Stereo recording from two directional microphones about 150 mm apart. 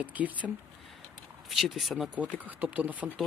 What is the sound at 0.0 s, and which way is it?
Speech, 10° right (ahead or behind).